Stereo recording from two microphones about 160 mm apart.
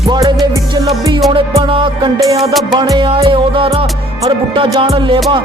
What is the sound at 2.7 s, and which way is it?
Music, 25° right (ahead or behind).